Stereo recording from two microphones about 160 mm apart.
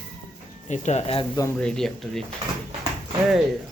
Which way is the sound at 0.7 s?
45° left (ahead or behind).